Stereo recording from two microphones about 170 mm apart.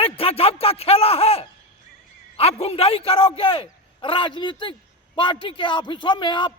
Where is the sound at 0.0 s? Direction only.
35° left (ahead or behind).